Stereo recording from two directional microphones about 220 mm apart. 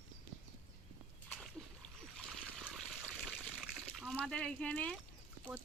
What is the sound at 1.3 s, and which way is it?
Splash, centre (ahead or behind).